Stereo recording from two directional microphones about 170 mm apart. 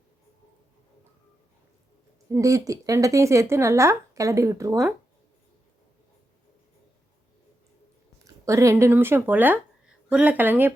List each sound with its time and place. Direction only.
2.3 s a woman's voice: 20° right (ahead or behind)
8.2 s a woman's voice: 15° right (ahead or behind)